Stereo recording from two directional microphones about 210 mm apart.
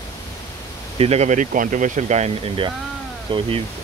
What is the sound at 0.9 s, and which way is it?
Speech, 30° right (ahead or behind).